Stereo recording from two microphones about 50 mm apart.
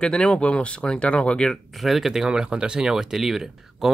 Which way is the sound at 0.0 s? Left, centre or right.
Centre.